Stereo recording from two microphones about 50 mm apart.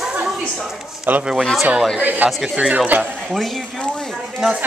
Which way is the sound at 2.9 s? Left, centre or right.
Right.